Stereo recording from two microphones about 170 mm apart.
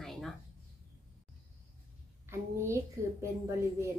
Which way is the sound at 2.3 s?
15° right (ahead or behind).